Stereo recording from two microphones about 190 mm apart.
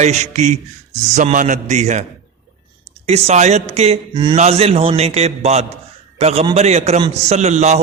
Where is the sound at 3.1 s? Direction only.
35° right (ahead or behind).